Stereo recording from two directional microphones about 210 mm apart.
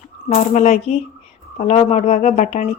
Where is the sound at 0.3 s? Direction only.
35° left (ahead or behind).